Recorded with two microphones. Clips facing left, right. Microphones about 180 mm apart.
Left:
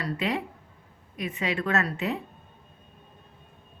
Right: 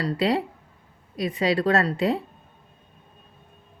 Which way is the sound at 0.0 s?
35° right (ahead or behind).